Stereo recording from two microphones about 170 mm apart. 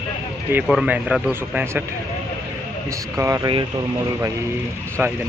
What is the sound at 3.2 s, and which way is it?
Speech, 20° right (ahead or behind).